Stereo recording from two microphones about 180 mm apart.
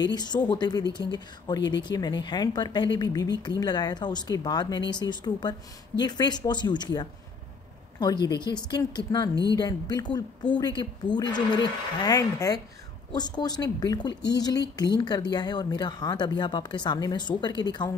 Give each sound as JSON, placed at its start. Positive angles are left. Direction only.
{"t": 0.0, "sound": "a woman's voice", "side_deg": 25}
{"t": 8.3, "sound": "a woman's voice", "side_deg": 25}